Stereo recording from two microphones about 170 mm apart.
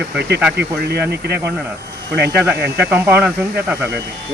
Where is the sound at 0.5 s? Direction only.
75° right (ahead or behind).